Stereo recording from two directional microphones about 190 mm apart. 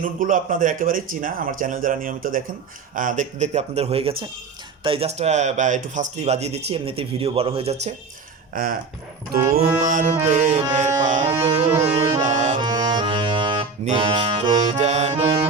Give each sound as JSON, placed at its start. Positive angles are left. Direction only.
{"t": 0.0, "sound": "speech", "side_deg": -45}
{"t": 8.5, "sound": "speech", "side_deg": -50}
{"t": 10.7, "sound": "music", "side_deg": -40}
{"t": 11.8, "sound": "speech", "side_deg": -35}
{"t": 12.2, "sound": "accordion", "side_deg": -40}
{"t": 12.5, "sound": "accordion", "side_deg": -20}
{"t": 14.6, "sound": "music", "side_deg": -40}